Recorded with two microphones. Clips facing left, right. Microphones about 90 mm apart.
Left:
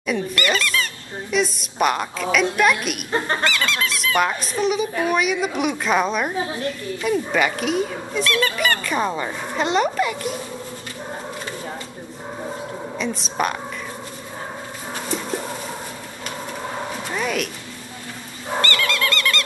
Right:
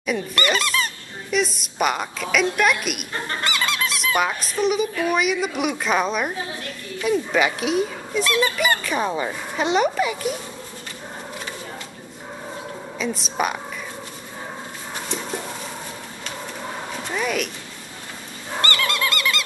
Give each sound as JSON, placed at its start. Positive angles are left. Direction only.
{"t": 0.3, "sound": "speech", "side_deg": -30}
{"t": 1.3, "sound": "a woman's voice", "side_deg": 0}
{"t": 3.5, "sound": "speech", "side_deg": -20}
{"t": 4.2, "sound": "a woman's voice", "side_deg": 0}
{"t": 8.3, "sound": "speech", "side_deg": -15}
{"t": 8.5, "sound": "a woman's voice", "side_deg": -5}
{"t": 12.9, "sound": "a woman's voice", "side_deg": 0}
{"t": 17.1, "sound": "dog", "side_deg": 0}
{"t": 18.6, "sound": "dog", "side_deg": -25}